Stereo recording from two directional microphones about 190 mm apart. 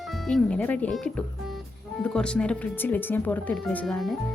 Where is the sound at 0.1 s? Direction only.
Centre (ahead or behind).